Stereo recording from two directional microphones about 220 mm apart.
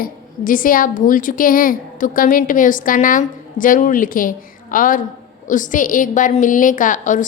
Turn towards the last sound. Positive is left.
turn(degrees=35)  # may be behind; listen again after turning